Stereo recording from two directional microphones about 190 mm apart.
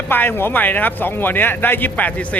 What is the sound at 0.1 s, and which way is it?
Speech, 10° left (ahead or behind).